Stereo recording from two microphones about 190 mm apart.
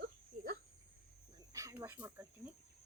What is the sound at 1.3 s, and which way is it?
Cricket, 15° right (ahead or behind).